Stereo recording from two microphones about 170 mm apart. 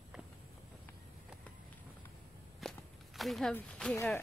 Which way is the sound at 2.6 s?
Centre (ahead or behind).